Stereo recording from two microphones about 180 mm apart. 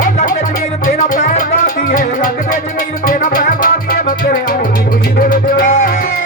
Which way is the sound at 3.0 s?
50° left (ahead or behind).